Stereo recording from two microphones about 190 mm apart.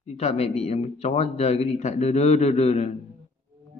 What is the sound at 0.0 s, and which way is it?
Speech, 35° left (ahead or behind).